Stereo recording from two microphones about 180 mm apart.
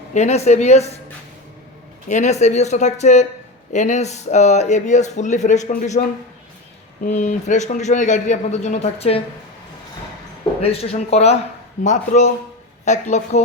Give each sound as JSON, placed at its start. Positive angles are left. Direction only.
{"t": 0.1, "sound": "speech", "side_deg": 40}
{"t": 2.0, "sound": "speech", "side_deg": 40}
{"t": 10.6, "sound": "speech", "side_deg": 35}